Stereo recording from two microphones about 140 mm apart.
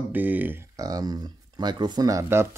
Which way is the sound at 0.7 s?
25° right (ahead or behind).